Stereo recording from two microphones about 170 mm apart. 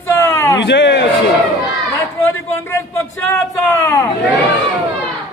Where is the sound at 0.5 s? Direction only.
90° left.